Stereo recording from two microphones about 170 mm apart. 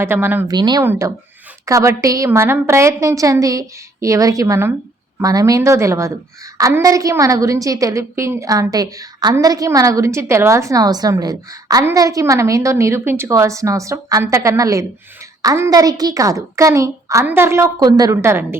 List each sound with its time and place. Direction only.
0.0 s speech: 15° right (ahead or behind)
0.5 s a woman's voice: 25° right (ahead or behind)